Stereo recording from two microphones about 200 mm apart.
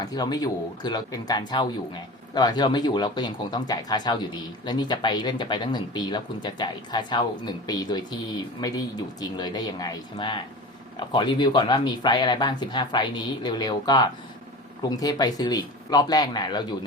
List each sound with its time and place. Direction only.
0.0 s speech: 20° left (ahead or behind)